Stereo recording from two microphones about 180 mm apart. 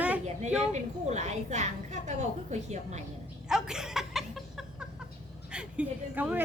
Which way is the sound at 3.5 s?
5° right (ahead or behind).